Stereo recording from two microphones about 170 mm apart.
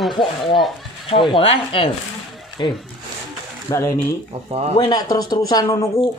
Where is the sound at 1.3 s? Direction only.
30° left (ahead or behind).